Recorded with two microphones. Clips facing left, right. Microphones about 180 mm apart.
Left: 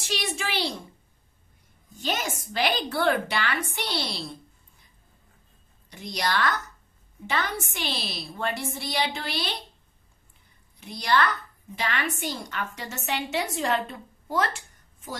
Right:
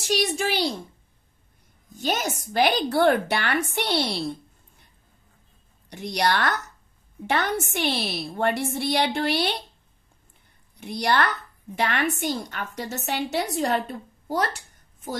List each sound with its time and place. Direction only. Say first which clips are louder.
0.0 s a woman's voice: right 7 dB; 40° right (ahead or behind)
2.0 s speech: right 3 dB; 40° right (ahead or behind); by 4.8 s 55° right (ahead or behind)
5.9 s a woman's voice: right 5 dB; 60° right (ahead or behind)
10.8 s a woman's voice: right 1 dB; 60° right (ahead or behind); by 14.6 s 40° right (ahead or behind)